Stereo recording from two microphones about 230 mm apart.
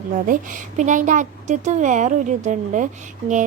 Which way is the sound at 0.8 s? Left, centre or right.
Right.